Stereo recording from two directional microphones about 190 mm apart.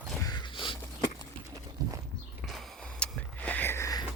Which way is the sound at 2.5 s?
5° left (ahead or behind).